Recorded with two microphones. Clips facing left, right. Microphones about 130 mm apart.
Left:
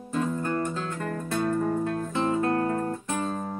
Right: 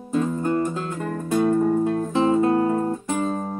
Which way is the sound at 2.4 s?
15° right (ahead or behind).